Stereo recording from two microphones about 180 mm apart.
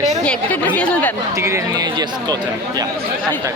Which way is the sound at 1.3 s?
15° right (ahead or behind).